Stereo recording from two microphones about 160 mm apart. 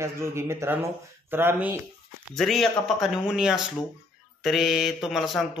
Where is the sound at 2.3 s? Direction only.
Centre (ahead or behind).